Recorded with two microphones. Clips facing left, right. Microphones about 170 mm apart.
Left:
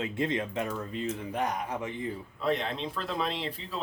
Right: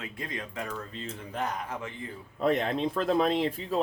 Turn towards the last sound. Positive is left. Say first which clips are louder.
# right 8 dB
turn(degrees=-45)  # may be behind; listen again after turning